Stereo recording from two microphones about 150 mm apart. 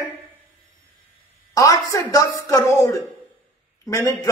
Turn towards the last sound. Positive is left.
turn(degrees=20)  # may be behind; listen again after turning